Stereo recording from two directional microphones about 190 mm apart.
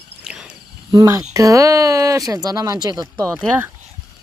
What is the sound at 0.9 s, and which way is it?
Speech, 15° right (ahead or behind).